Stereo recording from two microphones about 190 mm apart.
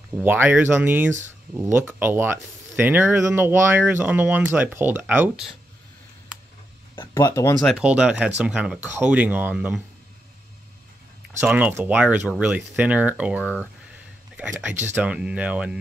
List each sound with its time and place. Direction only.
0.2 s speech: 10° right (ahead or behind)
7.0 s speech: 20° left (ahead or behind)
7.6 s speech: 5° right (ahead or behind)
11.3 s speech: 10° right (ahead or behind)